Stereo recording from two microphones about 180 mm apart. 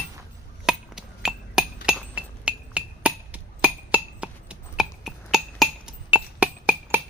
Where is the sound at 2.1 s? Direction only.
5° right (ahead or behind).